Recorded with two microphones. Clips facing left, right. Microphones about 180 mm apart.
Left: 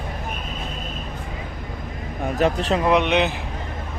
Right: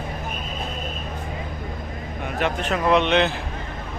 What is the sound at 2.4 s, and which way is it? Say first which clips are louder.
Speech: left 4 dB; 35° left (ahead or behind).